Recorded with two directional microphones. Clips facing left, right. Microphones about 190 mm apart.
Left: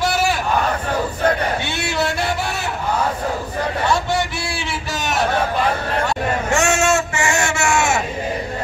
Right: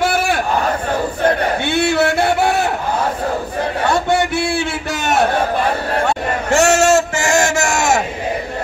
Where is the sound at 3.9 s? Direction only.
55° right (ahead or behind).